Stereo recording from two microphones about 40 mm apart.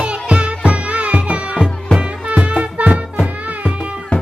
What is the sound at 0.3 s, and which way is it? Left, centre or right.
Music, right.